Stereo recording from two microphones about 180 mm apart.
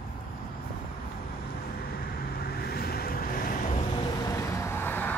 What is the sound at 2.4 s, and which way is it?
Vehicle, 60° left (ahead or behind).